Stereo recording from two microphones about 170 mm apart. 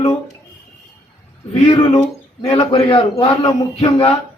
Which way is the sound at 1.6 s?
30° left (ahead or behind).